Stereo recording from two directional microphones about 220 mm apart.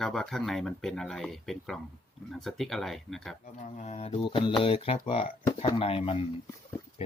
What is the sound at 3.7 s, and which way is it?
Mantra, 30° left (ahead or behind).